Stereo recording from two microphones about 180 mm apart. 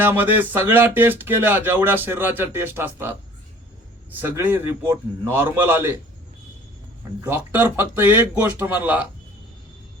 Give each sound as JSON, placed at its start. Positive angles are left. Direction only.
{"t": 0.0, "sound": "speech", "side_deg": -10}
{"t": 7.3, "sound": "speech", "side_deg": -10}